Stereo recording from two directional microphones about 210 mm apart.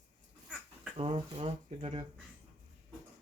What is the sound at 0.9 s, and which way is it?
Speech, 25° right (ahead or behind).